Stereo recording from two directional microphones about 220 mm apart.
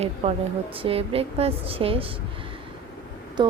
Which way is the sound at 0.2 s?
30° right (ahead or behind).